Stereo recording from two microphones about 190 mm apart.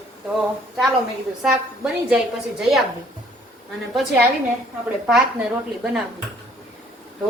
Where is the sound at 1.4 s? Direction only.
Centre (ahead or behind).